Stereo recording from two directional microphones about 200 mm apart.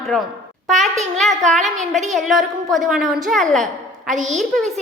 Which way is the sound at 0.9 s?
35° right (ahead or behind).